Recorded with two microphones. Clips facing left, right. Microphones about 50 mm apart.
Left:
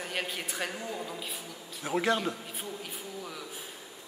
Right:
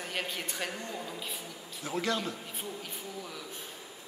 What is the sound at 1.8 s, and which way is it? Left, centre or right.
Speech, left.